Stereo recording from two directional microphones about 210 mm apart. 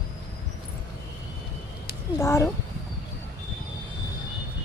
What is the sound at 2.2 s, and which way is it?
Speech, 10° left (ahead or behind).